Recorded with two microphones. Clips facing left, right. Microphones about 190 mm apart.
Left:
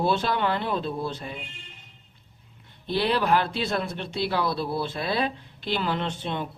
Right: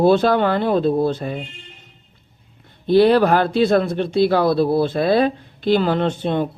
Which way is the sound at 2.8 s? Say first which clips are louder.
Right 12 dB; 45° right (ahead or behind).